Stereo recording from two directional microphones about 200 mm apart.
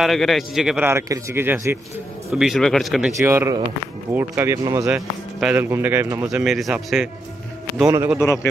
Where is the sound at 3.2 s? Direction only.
10° right (ahead or behind).